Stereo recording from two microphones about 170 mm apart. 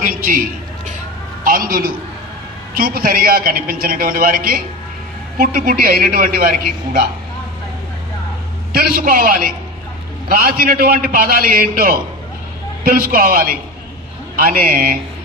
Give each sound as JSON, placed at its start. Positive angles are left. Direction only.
{"t": 0.0, "sound": "a sound", "side_deg": -55}
{"t": 1.4, "sound": "a man's voice", "side_deg": -55}
{"t": 8.7, "sound": "a man's voice", "side_deg": -60}